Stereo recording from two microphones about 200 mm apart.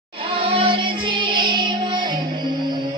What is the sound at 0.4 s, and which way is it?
Music, 25° right (ahead or behind).